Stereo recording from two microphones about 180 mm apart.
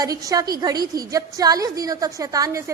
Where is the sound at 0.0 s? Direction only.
20° right (ahead or behind).